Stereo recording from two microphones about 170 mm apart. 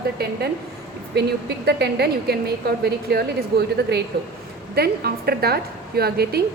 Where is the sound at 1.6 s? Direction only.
75° right (ahead or behind).